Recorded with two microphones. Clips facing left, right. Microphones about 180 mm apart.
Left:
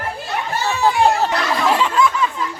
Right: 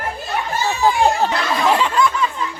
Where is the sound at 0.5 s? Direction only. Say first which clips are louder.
Even; 65° left (ahead or behind).